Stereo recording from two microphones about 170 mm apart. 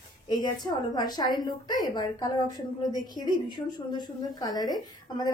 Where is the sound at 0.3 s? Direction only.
25° left (ahead or behind).